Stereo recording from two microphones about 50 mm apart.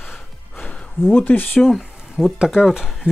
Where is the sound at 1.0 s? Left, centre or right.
Left.